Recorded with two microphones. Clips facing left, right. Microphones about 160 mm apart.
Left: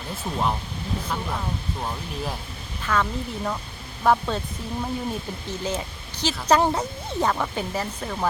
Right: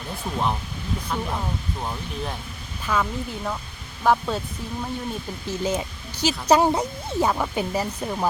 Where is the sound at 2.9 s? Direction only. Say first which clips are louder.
Even; 10° right (ahead or behind).